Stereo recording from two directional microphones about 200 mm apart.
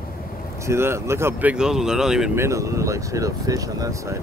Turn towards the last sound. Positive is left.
turn(degrees=-15)  # may be behind; listen again after turning